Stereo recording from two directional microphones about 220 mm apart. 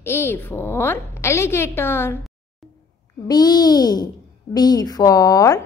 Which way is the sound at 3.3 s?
20° left (ahead or behind).